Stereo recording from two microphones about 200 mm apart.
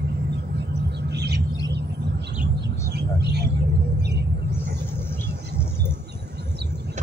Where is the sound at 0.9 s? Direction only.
55° right (ahead or behind).